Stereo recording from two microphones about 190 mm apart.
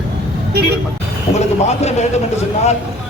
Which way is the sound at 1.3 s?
35° left (ahead or behind).